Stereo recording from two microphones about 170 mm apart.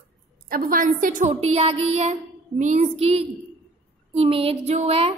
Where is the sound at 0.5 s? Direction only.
55° right (ahead or behind); by 5.1 s 35° right (ahead or behind).